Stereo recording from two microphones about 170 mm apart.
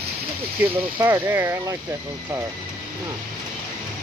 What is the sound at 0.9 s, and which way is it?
Speech, 20° right (ahead or behind).